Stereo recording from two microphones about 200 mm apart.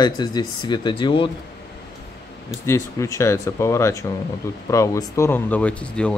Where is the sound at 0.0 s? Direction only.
20° left (ahead or behind).